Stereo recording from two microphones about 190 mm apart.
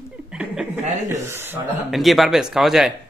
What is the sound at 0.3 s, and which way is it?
Chuckle, 5° right (ahead or behind).